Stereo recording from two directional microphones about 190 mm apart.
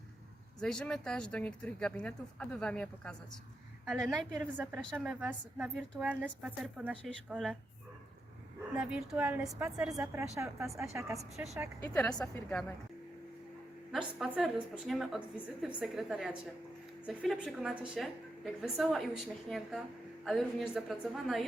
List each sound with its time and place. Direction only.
0.6 s a woman's voice: 5° left (ahead or behind)
4.5 s a woman's voice: 10° right (ahead or behind)
4.8 s a woman's voice: 5° left (ahead or behind)
5.2 s a woman's voice: 10° right (ahead or behind)
8.7 s a woman's voice: 5° right (ahead or behind)
10.1 s a woman's voice: 15° right (ahead or behind)
10.7 s a woman's voice: centre (ahead or behind)
10.9 s a woman's voice: 15° right (ahead or behind)
12.3 s a woman's voice: 5° left (ahead or behind)
14.3 s a woman's voice: centre (ahead or behind)